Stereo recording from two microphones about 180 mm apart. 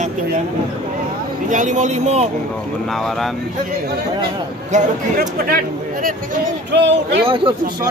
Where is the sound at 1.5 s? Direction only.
45° right (ahead or behind).